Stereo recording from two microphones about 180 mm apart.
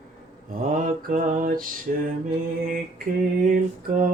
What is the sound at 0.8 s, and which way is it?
Mantra, 50° right (ahead or behind).